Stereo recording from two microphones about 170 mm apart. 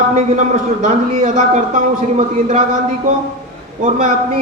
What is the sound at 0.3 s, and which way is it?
A man's voice, 45° right (ahead or behind).